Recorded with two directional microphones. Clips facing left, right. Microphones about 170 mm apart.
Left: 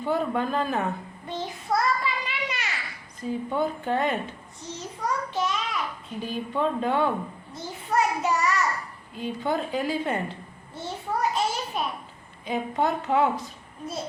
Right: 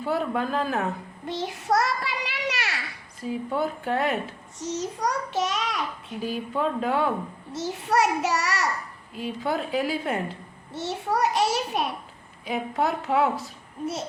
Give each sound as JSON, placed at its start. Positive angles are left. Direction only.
{"t": 0.0, "sound": "a woman's voice", "side_deg": -5}
{"t": 1.3, "sound": "child singing", "side_deg": -80}
{"t": 3.2, "sound": "a woman's voice", "side_deg": -5}
{"t": 4.6, "sound": "a sound", "side_deg": -85}
{"t": 6.2, "sound": "a woman's voice", "side_deg": -5}
{"t": 7.5, "sound": "a child's voice", "side_deg": -85}
{"t": 9.1, "sound": "a woman's voice", "side_deg": -5}
{"t": 10.8, "sound": "a sound", "side_deg": -85}
{"t": 12.5, "sound": "a woman's voice", "side_deg": 0}